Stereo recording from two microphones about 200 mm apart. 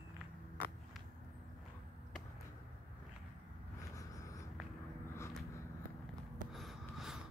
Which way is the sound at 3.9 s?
15° left (ahead or behind).